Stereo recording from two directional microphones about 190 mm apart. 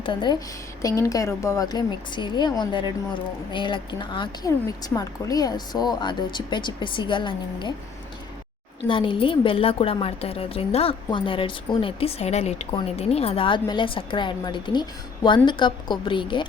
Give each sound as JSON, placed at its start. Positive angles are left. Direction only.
{"t": 0.0, "sound": "a woman's voice", "side_deg": 25}
{"t": 8.9, "sound": "a woman's voice", "side_deg": 25}